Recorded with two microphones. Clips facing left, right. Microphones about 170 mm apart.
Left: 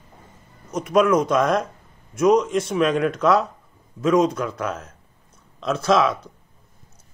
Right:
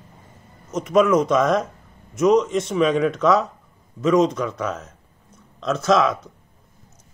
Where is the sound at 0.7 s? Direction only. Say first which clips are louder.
Right 1 dB; centre (ahead or behind).